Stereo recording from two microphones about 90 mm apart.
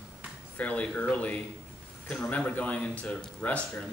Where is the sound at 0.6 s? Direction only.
15° left (ahead or behind).